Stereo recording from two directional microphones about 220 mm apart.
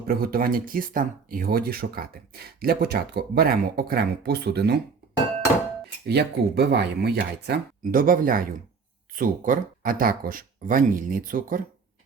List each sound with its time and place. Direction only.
0.1 s speech: 45° right (ahead or behind)
6.1 s speech: 45° right (ahead or behind)